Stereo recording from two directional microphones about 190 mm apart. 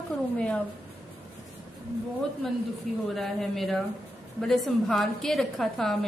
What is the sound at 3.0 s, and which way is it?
A woman's voice, centre (ahead or behind).